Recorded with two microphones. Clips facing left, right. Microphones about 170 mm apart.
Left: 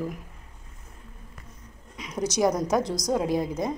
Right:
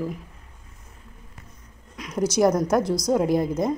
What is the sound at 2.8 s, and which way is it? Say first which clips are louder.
Speech: right 5 dB; 15° left (ahead or behind).